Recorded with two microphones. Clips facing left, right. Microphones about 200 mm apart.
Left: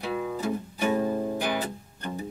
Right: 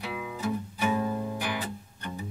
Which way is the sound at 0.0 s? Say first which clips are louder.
Left 4 dB; 40° left (ahead or behind).